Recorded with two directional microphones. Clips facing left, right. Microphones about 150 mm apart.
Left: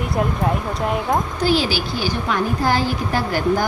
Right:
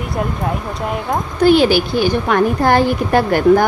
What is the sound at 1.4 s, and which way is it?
A woman's voice, 55° right (ahead or behind).